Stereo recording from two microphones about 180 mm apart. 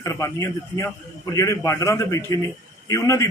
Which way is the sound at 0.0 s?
15° left (ahead or behind).